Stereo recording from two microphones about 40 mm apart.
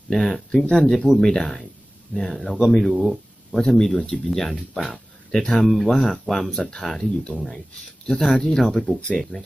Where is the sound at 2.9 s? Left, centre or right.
Centre.